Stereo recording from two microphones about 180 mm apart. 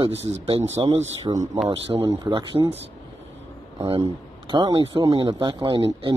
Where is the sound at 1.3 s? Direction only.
20° right (ahead or behind).